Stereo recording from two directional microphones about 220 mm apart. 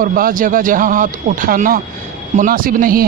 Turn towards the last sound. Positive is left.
turn(degrees=-40)  # may be behind; listen again after turning